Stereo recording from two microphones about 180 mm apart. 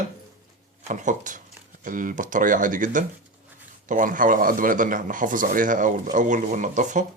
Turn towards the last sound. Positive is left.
turn(degrees=-45)  # may be behind; listen again after turning